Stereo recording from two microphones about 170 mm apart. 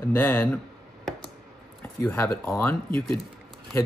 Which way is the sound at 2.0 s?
10° left (ahead or behind).